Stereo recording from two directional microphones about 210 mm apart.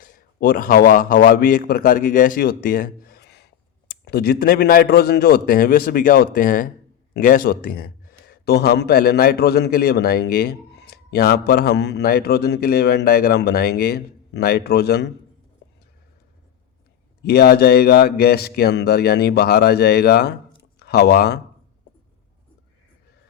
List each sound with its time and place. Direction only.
0.0 s a man's voice: 45° left (ahead or behind)
17.2 s speech: 50° left (ahead or behind)